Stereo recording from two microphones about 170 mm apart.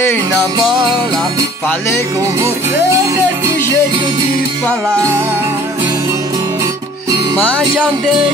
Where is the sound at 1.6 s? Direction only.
15° left (ahead or behind).